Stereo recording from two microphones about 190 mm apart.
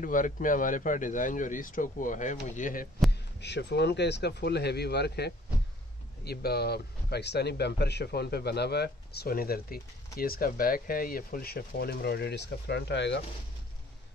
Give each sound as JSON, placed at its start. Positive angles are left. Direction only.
{"t": 0.0, "sound": "speech", "side_deg": 45}
{"t": 3.1, "sound": "speech", "side_deg": 65}